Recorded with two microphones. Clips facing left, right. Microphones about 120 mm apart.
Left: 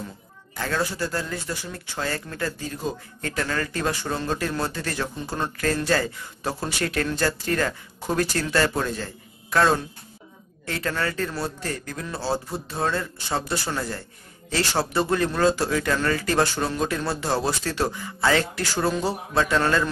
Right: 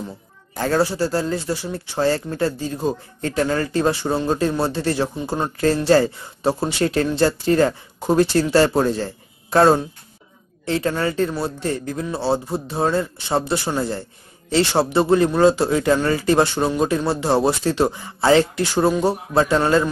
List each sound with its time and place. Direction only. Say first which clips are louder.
0.6 s speech: right 7 dB; 35° right (ahead or behind)
10.6 s speech: right 6 dB; 25° right (ahead or behind)